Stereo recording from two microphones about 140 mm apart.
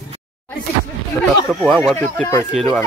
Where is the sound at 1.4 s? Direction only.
Centre (ahead or behind).